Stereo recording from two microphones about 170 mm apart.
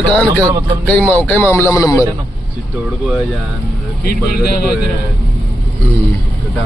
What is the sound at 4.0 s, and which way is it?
Speech, 60° left (ahead or behind).